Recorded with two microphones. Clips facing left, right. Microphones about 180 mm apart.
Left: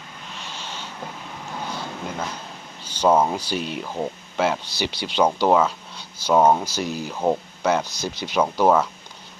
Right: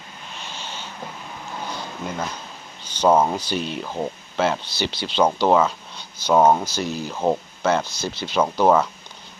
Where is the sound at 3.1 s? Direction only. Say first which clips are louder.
Right 1 dB; 5° right (ahead or behind).